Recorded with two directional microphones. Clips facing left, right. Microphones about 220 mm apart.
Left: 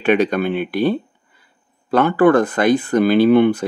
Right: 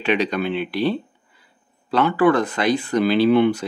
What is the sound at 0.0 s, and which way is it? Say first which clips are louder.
Speech: left 5 dB; 50° left (ahead or behind).